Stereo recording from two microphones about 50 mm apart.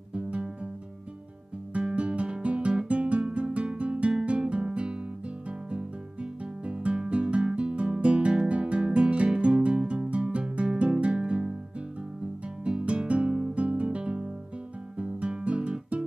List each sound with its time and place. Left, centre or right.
0.1 s music: right
1.7 s guitar: right
2.9 s music: right
6.4 s guitar: right
7.1 s music: right
12.6 s music: right
15.0 s guitar: right